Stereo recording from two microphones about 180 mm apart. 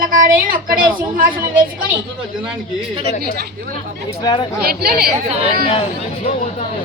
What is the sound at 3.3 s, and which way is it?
Speech, 55° right (ahead or behind).